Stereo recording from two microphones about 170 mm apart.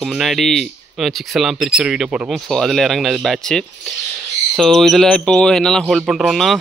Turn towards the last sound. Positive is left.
turn(degrees=0)  # may be behind; listen again after turning